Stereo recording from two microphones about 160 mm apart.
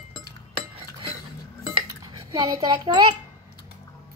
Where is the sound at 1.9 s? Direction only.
25° right (ahead or behind).